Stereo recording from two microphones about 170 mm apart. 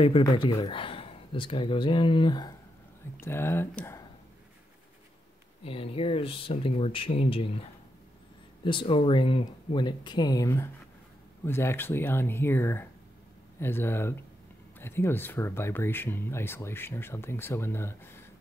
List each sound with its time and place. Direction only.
0.2 s speech: 25° left (ahead or behind)
3.2 s speech: 15° left (ahead or behind)
5.6 s speech: 35° left (ahead or behind)
8.6 s speech: 30° left (ahead or behind); by 18.2 s 15° left (ahead or behind)